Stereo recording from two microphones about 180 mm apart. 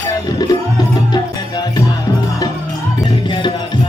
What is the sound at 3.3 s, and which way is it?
Music, 25° left (ahead or behind).